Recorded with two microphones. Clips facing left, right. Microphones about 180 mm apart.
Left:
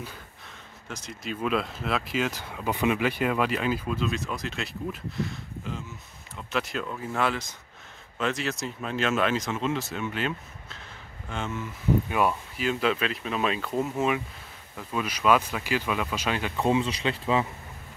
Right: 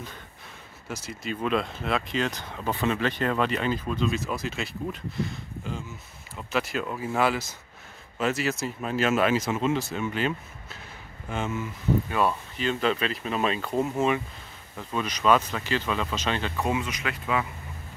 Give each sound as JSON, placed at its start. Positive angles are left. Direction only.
{"t": 0.8, "sound": "speech", "side_deg": -5}
{"t": 12.1, "sound": "speech", "side_deg": 10}
{"t": 16.5, "sound": "speech", "side_deg": 25}